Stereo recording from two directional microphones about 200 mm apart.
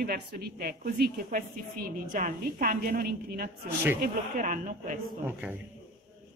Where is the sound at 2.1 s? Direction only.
45° right (ahead or behind).